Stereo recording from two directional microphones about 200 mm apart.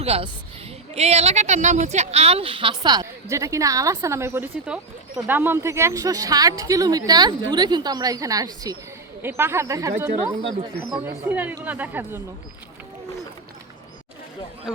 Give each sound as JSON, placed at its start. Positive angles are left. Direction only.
{"t": 0.0, "sound": "a woman's voice", "side_deg": -30}
{"t": 10.9, "sound": "speech", "side_deg": -10}